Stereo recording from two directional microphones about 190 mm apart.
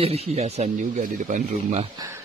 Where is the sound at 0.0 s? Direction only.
30° right (ahead or behind).